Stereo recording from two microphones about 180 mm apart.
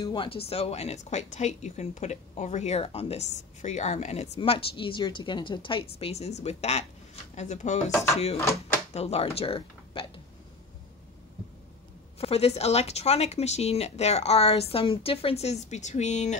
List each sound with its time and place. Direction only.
0.0 s speech: 25° left (ahead or behind)
7.9 s speech: 15° left (ahead or behind)
8.9 s speech: 35° left (ahead or behind)
12.2 s speech: 35° left (ahead or behind)